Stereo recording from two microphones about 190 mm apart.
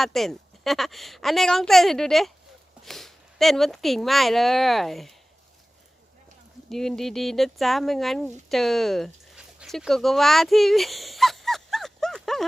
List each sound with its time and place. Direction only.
0.0 s speech: centre (ahead or behind)
6.7 s speech: centre (ahead or behind)